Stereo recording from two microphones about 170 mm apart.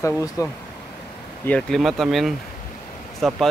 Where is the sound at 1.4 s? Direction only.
5° left (ahead or behind).